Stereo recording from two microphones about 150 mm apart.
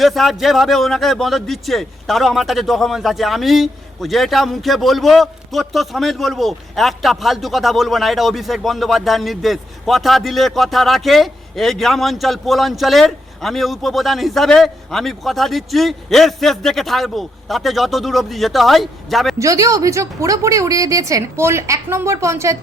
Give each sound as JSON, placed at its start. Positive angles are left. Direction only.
{"t": 0.0, "sound": "a man's voice", "side_deg": 0}
{"t": 19.4, "sound": "a woman's voice", "side_deg": -20}